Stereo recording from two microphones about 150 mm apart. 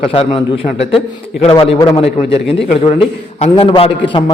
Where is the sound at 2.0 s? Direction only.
40° left (ahead or behind).